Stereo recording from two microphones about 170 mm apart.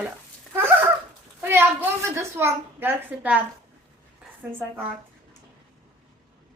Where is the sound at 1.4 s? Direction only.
10° right (ahead or behind).